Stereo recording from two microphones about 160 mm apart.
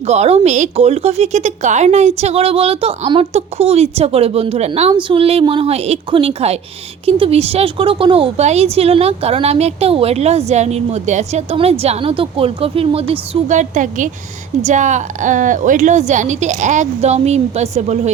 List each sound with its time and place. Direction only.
0.0 s a woman's voice: 40° right (ahead or behind)